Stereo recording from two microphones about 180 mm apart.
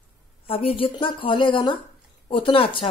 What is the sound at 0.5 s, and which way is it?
A woman's voice, 30° left (ahead or behind).